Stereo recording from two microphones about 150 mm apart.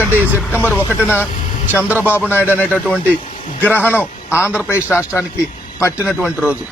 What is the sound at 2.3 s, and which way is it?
Speech, 15° left (ahead or behind).